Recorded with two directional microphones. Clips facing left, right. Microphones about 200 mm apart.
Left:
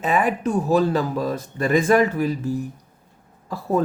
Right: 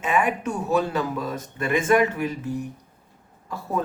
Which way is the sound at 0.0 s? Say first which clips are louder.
Left 2 dB; 35° left (ahead or behind).